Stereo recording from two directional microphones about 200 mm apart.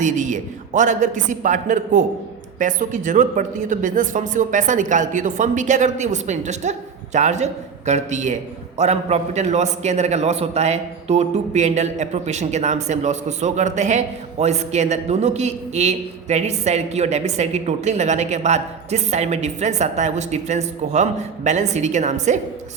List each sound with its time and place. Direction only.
0.0 s a man's voice: 40° right (ahead or behind)